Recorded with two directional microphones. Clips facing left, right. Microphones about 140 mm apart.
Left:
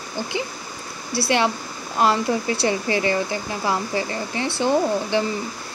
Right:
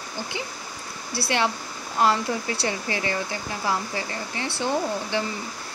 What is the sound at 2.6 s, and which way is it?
Speech, 20° left (ahead or behind).